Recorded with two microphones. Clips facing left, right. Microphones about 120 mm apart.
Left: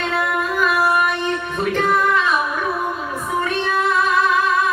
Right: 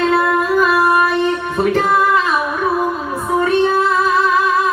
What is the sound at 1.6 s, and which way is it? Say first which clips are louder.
Music: right 3 dB; 35° right (ahead or behind).